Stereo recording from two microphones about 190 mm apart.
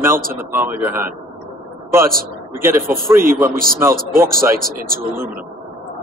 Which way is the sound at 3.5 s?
50° right (ahead or behind).